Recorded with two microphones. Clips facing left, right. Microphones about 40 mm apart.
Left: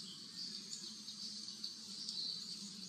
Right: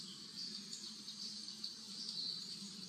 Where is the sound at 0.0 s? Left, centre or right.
Centre.